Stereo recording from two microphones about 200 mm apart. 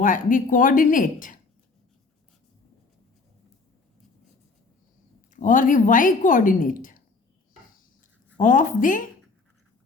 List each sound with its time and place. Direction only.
0.0 s speech: 40° left (ahead or behind)
5.3 s speech: 40° left (ahead or behind)
8.4 s speech: 40° left (ahead or behind)